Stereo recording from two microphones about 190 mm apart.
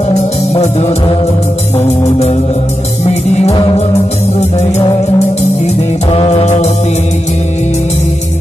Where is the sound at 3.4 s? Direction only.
30° left (ahead or behind).